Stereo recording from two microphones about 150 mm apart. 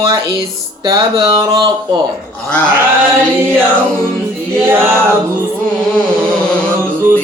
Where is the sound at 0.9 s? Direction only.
25° right (ahead or behind).